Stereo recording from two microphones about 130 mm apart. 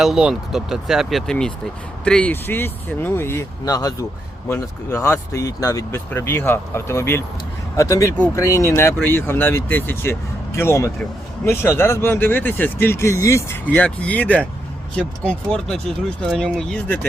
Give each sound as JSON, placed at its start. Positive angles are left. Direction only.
{"t": 0.0, "sound": "speech", "side_deg": -5}
{"t": 13.7, "sound": "speech", "side_deg": 10}